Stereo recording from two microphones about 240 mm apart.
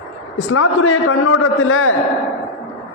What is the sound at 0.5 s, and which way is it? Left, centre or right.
A man's voice, left.